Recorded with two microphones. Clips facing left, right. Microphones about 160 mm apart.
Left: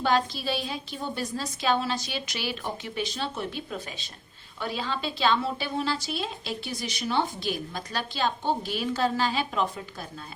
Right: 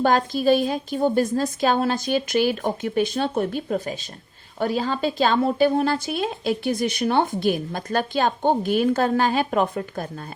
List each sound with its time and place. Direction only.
0.0 s a woman's voice: 50° right (ahead or behind)